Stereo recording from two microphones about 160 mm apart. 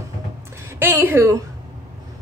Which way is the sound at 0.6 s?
15° right (ahead or behind).